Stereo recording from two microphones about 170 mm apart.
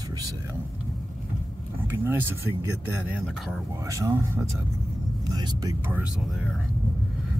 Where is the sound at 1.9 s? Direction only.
10° right (ahead or behind).